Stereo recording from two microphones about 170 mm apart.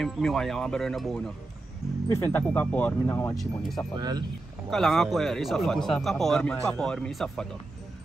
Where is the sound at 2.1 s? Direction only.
15° left (ahead or behind).